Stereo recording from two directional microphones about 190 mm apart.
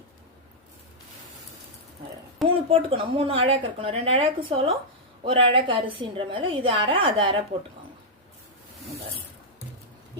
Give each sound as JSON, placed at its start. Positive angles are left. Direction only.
{"t": 2.6, "sound": "a woman's voice", "side_deg": -30}